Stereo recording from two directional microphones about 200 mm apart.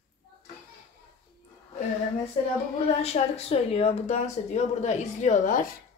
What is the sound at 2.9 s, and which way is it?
A woman's voice, 30° left (ahead or behind).